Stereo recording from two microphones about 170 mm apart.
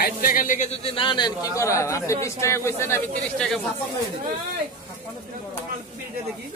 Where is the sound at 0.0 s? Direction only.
60° left (ahead or behind); by 3.0 s 15° left (ahead or behind).